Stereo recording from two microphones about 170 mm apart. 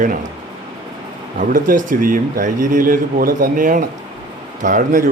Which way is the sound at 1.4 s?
55° right (ahead or behind).